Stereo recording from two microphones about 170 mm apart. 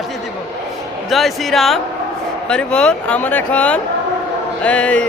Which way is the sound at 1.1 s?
Centre (ahead or behind).